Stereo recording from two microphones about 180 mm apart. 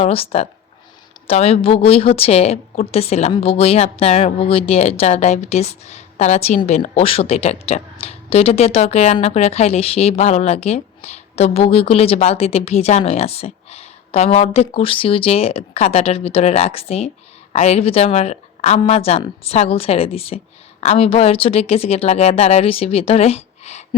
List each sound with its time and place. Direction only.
0.0 s speech: 35° left (ahead or behind)